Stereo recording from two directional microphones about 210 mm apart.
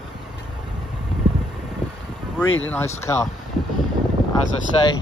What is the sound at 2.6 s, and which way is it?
Speech, 10° left (ahead or behind).